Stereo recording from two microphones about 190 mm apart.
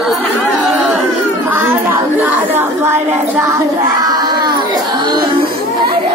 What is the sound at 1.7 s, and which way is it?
Speech, 10° right (ahead or behind).